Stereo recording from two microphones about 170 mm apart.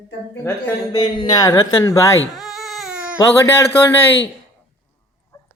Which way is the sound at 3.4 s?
15° left (ahead or behind).